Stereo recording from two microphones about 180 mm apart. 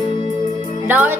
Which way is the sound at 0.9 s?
10° right (ahead or behind).